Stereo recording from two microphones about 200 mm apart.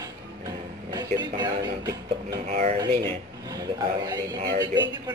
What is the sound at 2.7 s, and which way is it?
A man's voice, 20° right (ahead or behind).